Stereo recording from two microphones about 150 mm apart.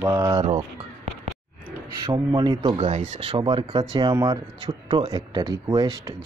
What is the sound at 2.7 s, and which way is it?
Speech, 50° right (ahead or behind).